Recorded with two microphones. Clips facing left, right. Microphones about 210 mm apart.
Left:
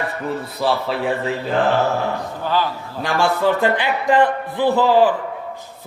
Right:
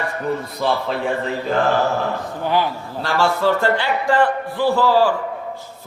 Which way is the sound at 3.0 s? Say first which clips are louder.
Even; 15° left (ahead or behind).